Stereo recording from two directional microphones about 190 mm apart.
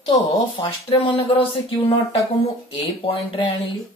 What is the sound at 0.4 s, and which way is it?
Speech, 25° left (ahead or behind).